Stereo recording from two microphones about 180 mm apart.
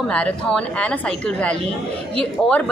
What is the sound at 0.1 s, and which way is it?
A woman's voice, 5° left (ahead or behind).